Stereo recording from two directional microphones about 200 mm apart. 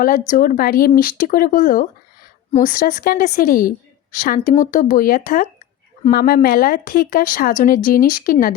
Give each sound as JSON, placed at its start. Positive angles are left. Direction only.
{"t": 0.0, "sound": "a woman's voice", "side_deg": 45}